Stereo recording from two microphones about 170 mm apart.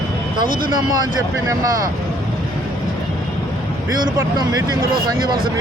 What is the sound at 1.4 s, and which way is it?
Speech, 20° right (ahead or behind).